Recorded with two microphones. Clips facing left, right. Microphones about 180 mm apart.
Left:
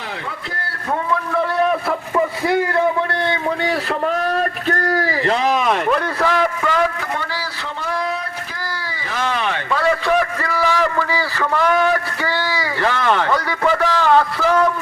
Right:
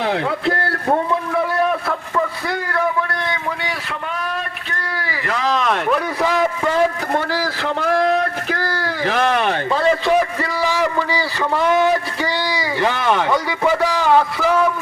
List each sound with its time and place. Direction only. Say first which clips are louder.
2.1 s a sound: left 6 dB; 20° left (ahead or behind)
4.0 s a sound: left 7 dB; 40° left (ahead or behind)
5.2 s speech: left 2 dB; 25° left (ahead or behind)
5.5 s speech: left 1 dB; 5° left (ahead or behind)
6.2 s a man's voice: right 1 dB; 25° right (ahead or behind)
8.8 s speech: right 5 dB; 70° right (ahead or behind); by 9.6 s 50° right (ahead or behind)
9.7 s a man's voice: right 1 dB; 25° right (ahead or behind); by 14.7 s 10° right (ahead or behind)